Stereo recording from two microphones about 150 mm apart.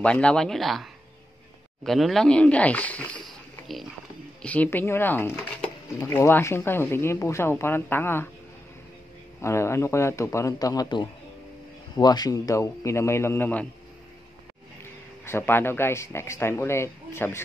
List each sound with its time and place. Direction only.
0.0 s speech: 5° left (ahead or behind)
1.9 s speech: centre (ahead or behind)
9.4 s a man's voice: 20° left (ahead or behind)
15.2 s speech: 15° left (ahead or behind)